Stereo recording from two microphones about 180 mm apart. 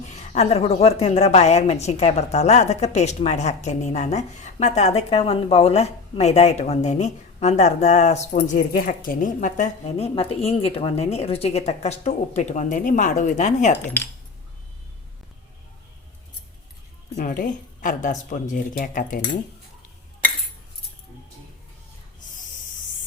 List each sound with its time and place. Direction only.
0.2 s a woman's voice: 35° left (ahead or behind)
8.3 s a woman's voice: 50° left (ahead or behind)
13.7 s cutlery: 10° left (ahead or behind)
17.2 s speech: 50° left (ahead or behind)